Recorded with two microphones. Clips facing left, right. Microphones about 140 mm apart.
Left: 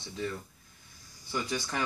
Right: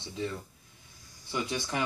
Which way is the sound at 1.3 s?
20° right (ahead or behind).